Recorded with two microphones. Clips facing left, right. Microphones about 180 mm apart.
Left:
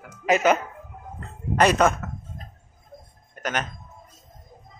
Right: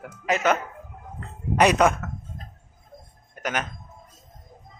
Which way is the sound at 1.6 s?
15° right (ahead or behind).